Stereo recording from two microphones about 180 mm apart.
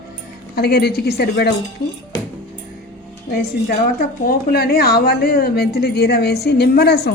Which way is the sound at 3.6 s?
55° left (ahead or behind).